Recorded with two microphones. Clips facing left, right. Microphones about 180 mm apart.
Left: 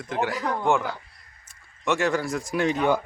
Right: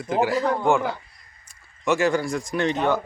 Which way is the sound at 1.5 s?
Centre (ahead or behind).